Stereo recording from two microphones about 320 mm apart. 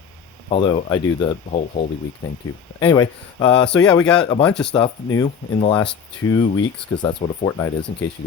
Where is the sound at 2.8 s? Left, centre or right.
Centre.